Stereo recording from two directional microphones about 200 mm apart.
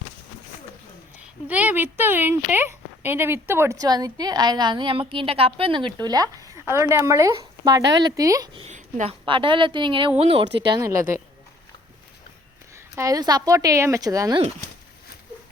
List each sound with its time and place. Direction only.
1.5 s speech: 5° right (ahead or behind)
8.6 s a sound: 35° right (ahead or behind)
9.2 s speech: 25° right (ahead or behind)
13.0 s speech: 20° right (ahead or behind)